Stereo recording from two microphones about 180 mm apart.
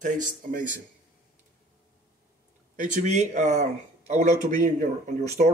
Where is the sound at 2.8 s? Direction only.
45° right (ahead or behind).